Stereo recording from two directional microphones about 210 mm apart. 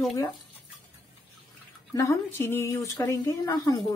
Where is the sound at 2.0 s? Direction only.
15° left (ahead or behind).